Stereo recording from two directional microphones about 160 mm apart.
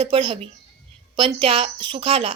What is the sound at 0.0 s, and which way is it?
A woman's voice, 30° right (ahead or behind).